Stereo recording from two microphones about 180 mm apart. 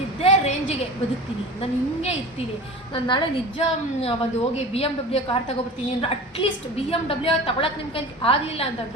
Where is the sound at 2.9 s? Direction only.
25° left (ahead or behind).